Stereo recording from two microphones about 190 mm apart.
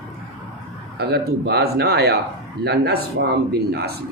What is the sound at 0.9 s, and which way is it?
Speech, 60° right (ahead or behind).